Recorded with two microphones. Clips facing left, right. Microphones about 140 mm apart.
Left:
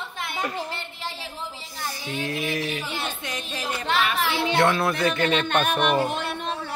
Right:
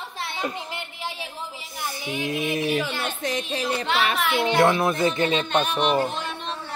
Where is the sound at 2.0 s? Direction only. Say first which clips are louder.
Right 2 dB; 20° right (ahead or behind).